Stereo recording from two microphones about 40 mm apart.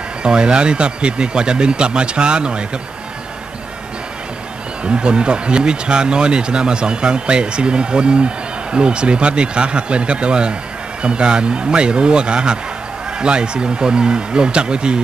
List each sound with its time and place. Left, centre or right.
0.2 s speech: right
4.8 s speech: right